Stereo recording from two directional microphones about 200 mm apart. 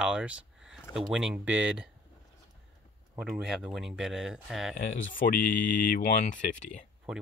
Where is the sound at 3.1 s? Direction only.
5° right (ahead or behind).